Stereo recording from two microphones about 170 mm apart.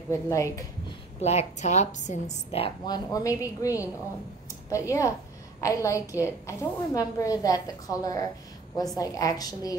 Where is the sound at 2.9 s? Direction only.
20° left (ahead or behind).